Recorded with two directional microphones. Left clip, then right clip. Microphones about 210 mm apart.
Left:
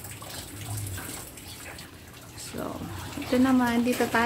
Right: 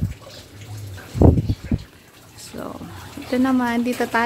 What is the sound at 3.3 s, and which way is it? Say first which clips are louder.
Speech: right 4 dB; 35° right (ahead or behind).